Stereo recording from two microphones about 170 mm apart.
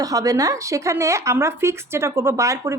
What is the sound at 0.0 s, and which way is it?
A woman's voice, 20° right (ahead or behind).